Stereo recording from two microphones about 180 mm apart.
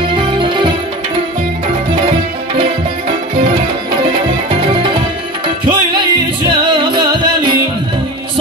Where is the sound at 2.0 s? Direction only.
30° right (ahead or behind).